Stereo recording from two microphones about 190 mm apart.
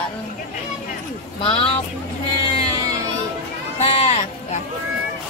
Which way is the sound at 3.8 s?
30° left (ahead or behind).